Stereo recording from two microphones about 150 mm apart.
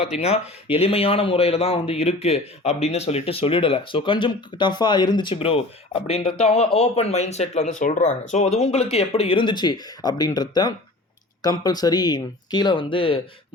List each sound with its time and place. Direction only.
0.2 s speech: 45° left (ahead or behind)